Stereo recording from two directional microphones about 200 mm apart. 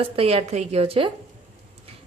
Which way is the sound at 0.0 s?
30° right (ahead or behind).